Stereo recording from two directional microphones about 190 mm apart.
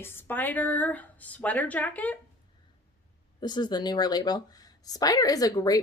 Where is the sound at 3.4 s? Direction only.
20° left (ahead or behind).